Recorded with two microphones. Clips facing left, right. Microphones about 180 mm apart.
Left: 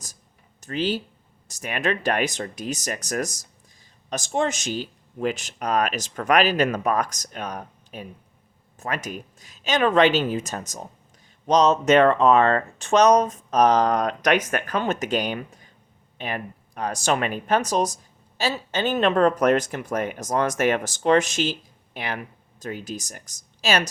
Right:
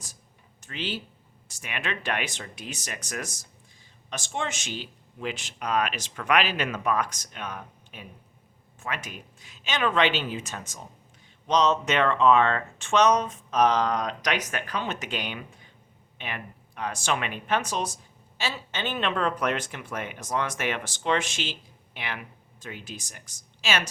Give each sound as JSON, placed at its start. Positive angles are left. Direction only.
{"t": 0.6, "sound": "speech", "side_deg": 40}